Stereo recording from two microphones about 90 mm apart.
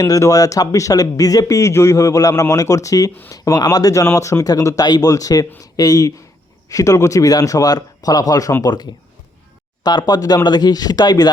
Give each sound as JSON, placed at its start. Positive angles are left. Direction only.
{"t": 0.0, "sound": "speech", "side_deg": 35}